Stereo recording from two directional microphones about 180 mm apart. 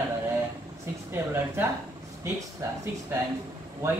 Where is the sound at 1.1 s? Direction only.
15° right (ahead or behind).